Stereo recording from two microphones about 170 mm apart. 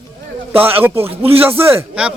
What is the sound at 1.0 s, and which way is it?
Speech, 35° right (ahead or behind).